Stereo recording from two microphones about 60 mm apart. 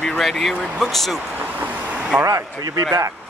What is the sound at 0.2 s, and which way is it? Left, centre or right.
Speech, centre.